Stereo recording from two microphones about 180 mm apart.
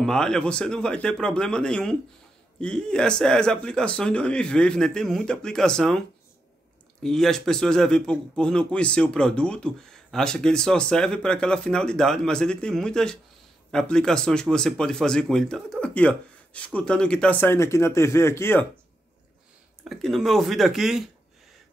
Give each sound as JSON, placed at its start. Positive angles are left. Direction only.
{"t": 0.0, "sound": "a man's voice", "side_deg": 5}
{"t": 19.8, "sound": "a man's voice", "side_deg": 0}